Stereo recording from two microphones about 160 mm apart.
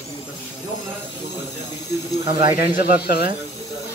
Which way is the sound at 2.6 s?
80° left.